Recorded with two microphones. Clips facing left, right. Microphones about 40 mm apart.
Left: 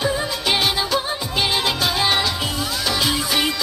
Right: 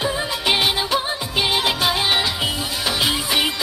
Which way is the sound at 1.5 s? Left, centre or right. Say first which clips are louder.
Right 3 dB; right.